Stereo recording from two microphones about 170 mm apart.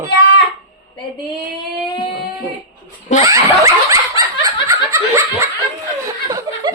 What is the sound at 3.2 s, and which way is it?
Laughter, 20° right (ahead or behind).